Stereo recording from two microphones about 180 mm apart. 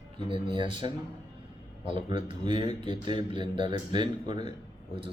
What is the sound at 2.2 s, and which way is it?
Speech, 25° right (ahead or behind).